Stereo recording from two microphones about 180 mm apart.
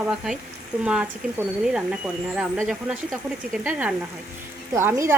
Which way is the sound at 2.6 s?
Centre (ahead or behind).